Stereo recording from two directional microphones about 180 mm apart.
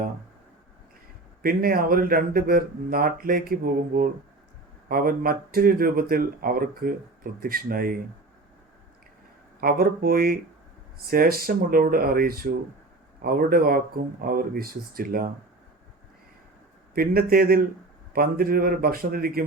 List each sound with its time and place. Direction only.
1.4 s speech: 55° right (ahead or behind)
9.6 s speech: 55° right (ahead or behind)
16.9 s speech: 55° right (ahead or behind)